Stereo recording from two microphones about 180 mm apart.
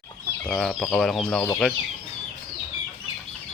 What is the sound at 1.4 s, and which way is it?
Speech, 15° left (ahead or behind).